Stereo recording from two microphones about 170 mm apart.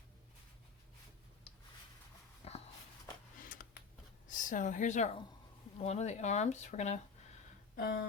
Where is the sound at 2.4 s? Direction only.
35° left (ahead or behind).